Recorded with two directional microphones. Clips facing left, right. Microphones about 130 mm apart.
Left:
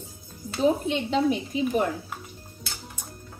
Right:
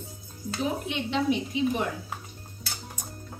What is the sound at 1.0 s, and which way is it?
Speech, 40° left (ahead or behind).